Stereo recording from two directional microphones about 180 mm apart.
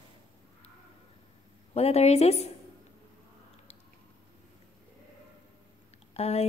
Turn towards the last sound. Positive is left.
turn(degrees=35)  # may be behind; listen again after turning